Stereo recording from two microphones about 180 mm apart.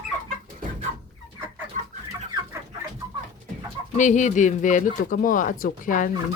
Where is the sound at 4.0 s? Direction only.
45° left (ahead or behind).